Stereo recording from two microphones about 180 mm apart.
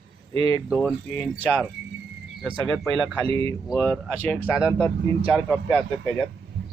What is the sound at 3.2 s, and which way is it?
Speech, 30° right (ahead or behind).